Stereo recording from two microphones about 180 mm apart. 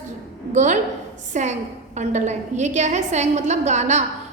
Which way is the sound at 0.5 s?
40° right (ahead or behind).